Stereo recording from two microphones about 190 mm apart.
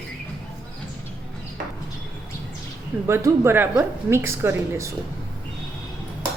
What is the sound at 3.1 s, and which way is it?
A woman's voice, 15° right (ahead or behind).